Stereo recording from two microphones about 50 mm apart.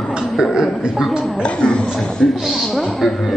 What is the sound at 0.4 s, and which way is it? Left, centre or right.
Speech, centre.